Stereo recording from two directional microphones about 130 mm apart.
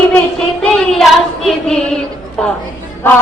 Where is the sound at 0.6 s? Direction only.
5° left (ahead or behind).